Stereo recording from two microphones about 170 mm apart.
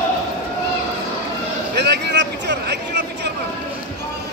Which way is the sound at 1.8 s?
80° right.